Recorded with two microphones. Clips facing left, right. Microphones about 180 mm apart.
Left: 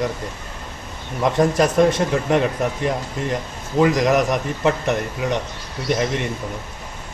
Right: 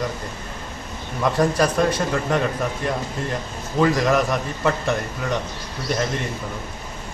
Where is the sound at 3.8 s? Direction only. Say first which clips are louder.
Left 2 dB; 20° left (ahead or behind).